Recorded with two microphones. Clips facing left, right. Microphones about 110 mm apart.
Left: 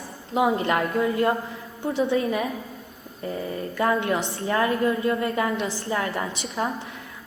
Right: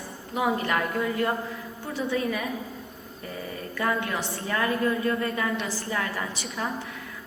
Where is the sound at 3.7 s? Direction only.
25° left (ahead or behind).